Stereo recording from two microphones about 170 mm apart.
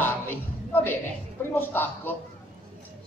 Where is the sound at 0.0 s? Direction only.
15° left (ahead or behind).